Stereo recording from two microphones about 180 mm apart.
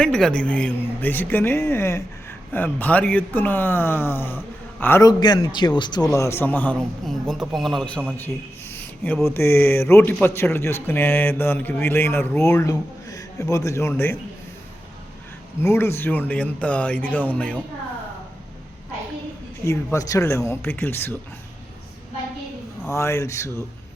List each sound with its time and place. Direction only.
0.0 s a man's voice: 5° left (ahead or behind)
8.2 s a sound: 10° left (ahead or behind)
9.2 s speech: 15° left (ahead or behind)
15.6 s speech: 15° left (ahead or behind)
19.6 s speech: 15° left (ahead or behind)
22.8 s speech: 15° left (ahead or behind)